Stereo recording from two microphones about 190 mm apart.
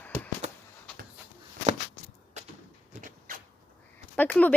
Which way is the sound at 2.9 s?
40° right (ahead or behind).